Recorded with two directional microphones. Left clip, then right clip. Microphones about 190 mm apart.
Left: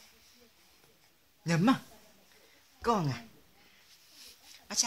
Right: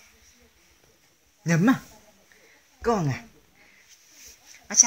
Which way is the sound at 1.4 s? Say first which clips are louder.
Right 6 dB; 15° right (ahead or behind).